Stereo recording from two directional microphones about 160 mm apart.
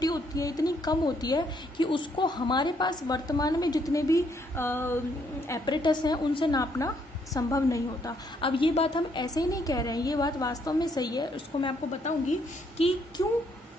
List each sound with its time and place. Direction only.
0.0 s a woman's voice: 20° left (ahead or behind)
5.5 s a woman's voice: 25° left (ahead or behind)
8.4 s a woman's voice: 35° left (ahead or behind)
12.0 s a woman's voice: 45° left (ahead or behind)
13.2 s a woman's voice: 25° left (ahead or behind)